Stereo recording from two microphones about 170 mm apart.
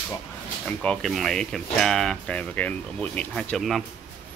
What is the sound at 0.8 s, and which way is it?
Speech, 5° left (ahead or behind).